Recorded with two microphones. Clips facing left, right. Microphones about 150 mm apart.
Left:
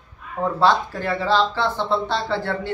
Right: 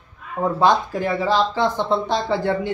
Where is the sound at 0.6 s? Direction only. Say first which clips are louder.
Right 1 dB; 15° right (ahead or behind).